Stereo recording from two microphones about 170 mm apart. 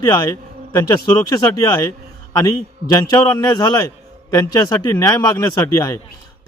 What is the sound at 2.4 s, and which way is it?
A man's voice, 20° left (ahead or behind).